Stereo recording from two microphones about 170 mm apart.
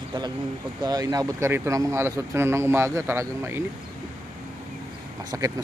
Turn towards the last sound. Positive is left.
turn(degrees=-20)  # may be behind; listen again after turning